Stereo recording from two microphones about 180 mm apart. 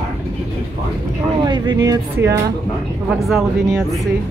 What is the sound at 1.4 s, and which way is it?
Speech, 25° right (ahead or behind).